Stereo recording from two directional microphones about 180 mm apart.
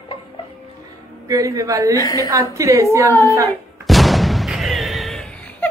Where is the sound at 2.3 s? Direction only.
15° right (ahead or behind).